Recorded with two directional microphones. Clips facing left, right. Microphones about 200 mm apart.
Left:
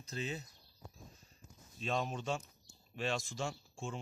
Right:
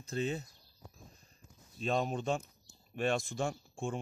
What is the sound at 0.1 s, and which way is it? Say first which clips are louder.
Speech: right 6 dB; 50° right (ahead or behind).